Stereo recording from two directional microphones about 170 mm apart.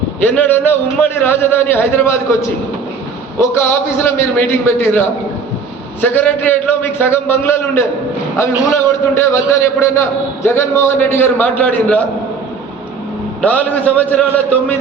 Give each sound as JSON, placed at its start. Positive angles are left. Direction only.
{"t": 0.2, "sound": "a man's voice", "side_deg": 10}
{"t": 3.5, "sound": "a man's voice", "side_deg": 15}
{"t": 13.4, "sound": "a man's voice", "side_deg": 10}